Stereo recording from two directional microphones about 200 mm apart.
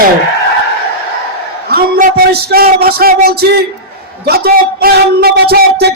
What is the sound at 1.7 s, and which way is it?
A man's voice, 50° right (ahead or behind).